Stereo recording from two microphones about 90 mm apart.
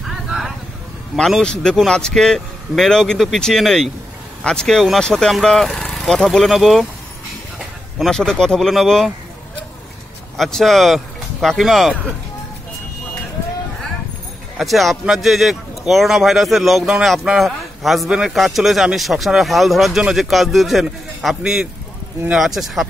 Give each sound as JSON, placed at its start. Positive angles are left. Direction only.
{"t": 0.0, "sound": "vehicle", "side_deg": 0}
{"t": 1.1, "sound": "speech", "side_deg": 5}
{"t": 8.0, "sound": "speech", "side_deg": 5}
{"t": 10.3, "sound": "speech", "side_deg": 0}
{"t": 14.6, "sound": "speech", "side_deg": 0}